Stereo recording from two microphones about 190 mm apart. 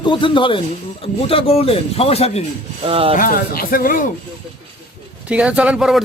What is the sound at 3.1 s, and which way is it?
Speech, 50° left (ahead or behind).